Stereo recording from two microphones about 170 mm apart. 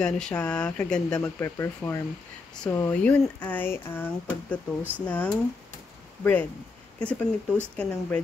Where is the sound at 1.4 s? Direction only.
15° left (ahead or behind).